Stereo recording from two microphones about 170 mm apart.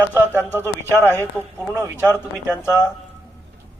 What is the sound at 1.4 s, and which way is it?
Speech, 10° right (ahead or behind).